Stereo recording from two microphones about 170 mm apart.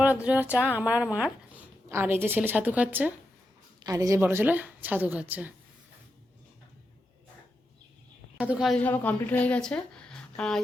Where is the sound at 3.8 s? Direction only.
20° right (ahead or behind).